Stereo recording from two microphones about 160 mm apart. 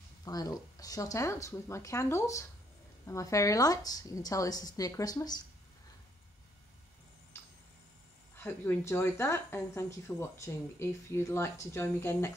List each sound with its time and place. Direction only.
0.2 s a woman's voice: 25° left (ahead or behind)
7.3 s tick-tock: 15° left (ahead or behind)
8.4 s a woman's voice: 15° left (ahead or behind)